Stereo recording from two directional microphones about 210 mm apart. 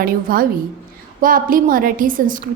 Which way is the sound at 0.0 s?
45° right (ahead or behind).